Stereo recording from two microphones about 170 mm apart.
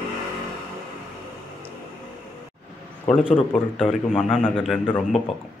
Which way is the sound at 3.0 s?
30° left (ahead or behind).